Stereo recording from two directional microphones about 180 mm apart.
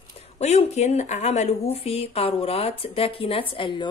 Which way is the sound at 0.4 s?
40° left (ahead or behind).